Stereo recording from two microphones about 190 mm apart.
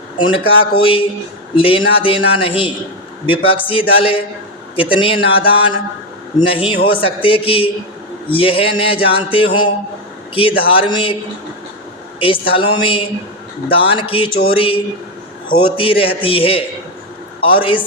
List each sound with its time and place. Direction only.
0.2 s a man's voice: 25° left (ahead or behind)
12.2 s a man's voice: 25° left (ahead or behind)